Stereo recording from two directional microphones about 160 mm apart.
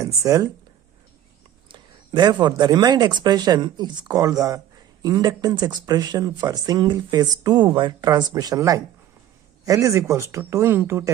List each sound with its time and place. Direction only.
0.0 s speech: 20° right (ahead or behind)
1.7 s a sound: 30° right (ahead or behind)
2.4 s speech: 25° right (ahead or behind)